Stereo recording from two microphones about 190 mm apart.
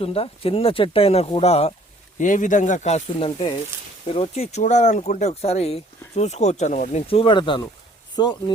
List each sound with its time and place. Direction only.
0.0 s speech: 30° left (ahead or behind)